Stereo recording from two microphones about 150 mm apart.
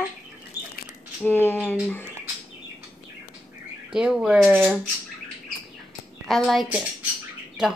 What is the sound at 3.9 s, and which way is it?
Speech, 5° right (ahead or behind).